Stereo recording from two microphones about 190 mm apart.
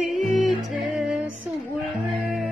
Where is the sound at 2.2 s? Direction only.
Centre (ahead or behind).